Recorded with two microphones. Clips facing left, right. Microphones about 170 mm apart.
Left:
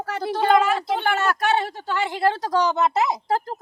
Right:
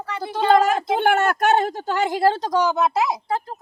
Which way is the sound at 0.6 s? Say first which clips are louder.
Right 3 dB; 50° right (ahead or behind).